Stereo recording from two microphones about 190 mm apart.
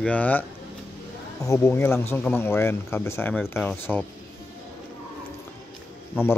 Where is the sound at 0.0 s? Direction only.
10° left (ahead or behind).